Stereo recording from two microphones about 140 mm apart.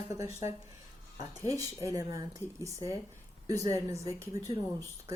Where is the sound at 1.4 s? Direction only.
25° right (ahead or behind).